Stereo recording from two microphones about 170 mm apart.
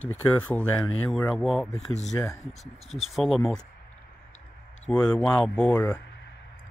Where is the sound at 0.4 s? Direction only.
10° left (ahead or behind).